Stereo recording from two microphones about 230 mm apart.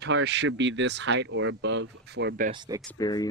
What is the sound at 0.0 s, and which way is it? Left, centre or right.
Speech, right.